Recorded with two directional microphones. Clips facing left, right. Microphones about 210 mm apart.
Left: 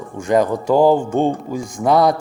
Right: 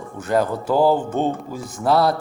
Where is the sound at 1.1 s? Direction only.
50° left (ahead or behind).